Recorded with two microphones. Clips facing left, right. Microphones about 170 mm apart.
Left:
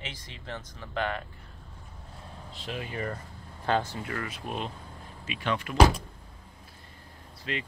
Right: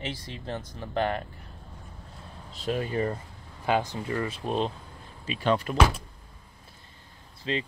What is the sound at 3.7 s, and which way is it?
Speech, 15° right (ahead or behind).